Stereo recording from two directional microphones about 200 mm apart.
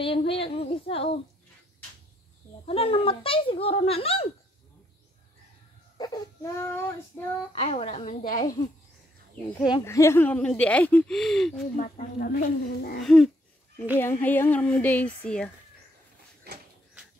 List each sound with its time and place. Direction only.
0.0 s a child's voice: 25° left (ahead or behind)
2.6 s a child's voice: 30° left (ahead or behind)
5.9 s speech: 20° left (ahead or behind)
7.5 s a woman's voice: 30° left (ahead or behind)
8.4 s a child's voice: 25° left (ahead or behind)
9.7 s speech: 15° left (ahead or behind)
11.7 s speech: 40° left (ahead or behind)
13.0 s speech: centre (ahead or behind)
16.5 s a sound: 50° right (ahead or behind)